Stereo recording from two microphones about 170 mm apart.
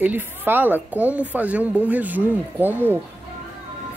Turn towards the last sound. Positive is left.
turn(degrees=-10)  # may be behind; listen again after turning